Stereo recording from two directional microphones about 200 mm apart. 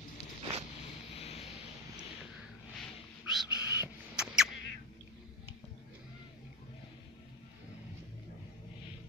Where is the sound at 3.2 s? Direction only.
5° right (ahead or behind).